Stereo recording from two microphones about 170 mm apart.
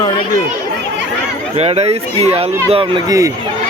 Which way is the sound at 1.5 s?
40° right (ahead or behind).